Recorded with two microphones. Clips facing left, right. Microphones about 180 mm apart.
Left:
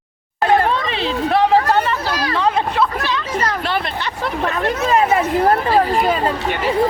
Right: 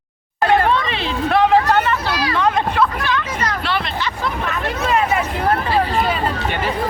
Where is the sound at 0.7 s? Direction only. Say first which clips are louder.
Left 1 dB; 35° left (ahead or behind).